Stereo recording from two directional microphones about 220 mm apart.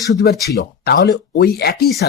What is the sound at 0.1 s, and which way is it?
Speech, 45° left (ahead or behind).